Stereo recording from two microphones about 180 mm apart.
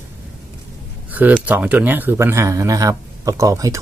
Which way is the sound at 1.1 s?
10° right (ahead or behind).